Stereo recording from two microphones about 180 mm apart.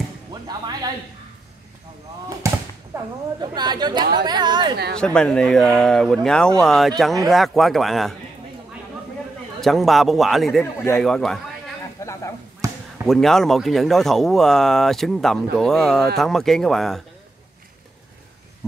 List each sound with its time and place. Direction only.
0.3 s speech: 20° right (ahead or behind)
2.9 s a woman's voice: 25° right (ahead or behind)
4.9 s speech: 5° left (ahead or behind)
9.6 s speech: centre (ahead or behind)
10.6 s speech: 10° left (ahead or behind)
12.0 s a sound: 15° left (ahead or behind)
12.6 s basketball bounce: 20° right (ahead or behind)
13.0 s speech: centre (ahead or behind)